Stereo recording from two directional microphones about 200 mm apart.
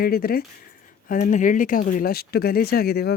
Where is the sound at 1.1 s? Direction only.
40° left (ahead or behind).